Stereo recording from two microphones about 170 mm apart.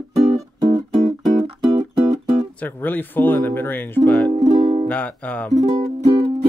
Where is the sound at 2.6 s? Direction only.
10° left (ahead or behind).